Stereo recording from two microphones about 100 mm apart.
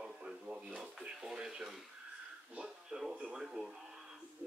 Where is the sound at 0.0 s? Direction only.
10° right (ahead or behind).